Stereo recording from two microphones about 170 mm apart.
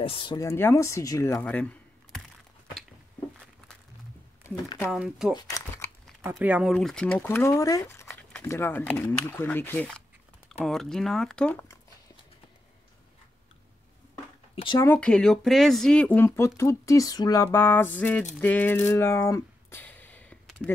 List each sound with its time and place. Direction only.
0.0 s speech: 30° left (ahead or behind)
1.4 s a sound: 10° left (ahead or behind)
4.4 s speech: 15° left (ahead or behind)
4.9 s speech: 5° right (ahead or behind)
6.4 s speech: 5° right (ahead or behind)
7.2 s speech: 15° left (ahead or behind)
14.5 s a sound: 30° left (ahead or behind)
14.8 s speech: 10° left (ahead or behind)
18.4 s a sound: 10° left (ahead or behind)